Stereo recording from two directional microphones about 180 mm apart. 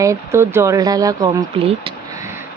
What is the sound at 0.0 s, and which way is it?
Speech, 15° right (ahead or behind).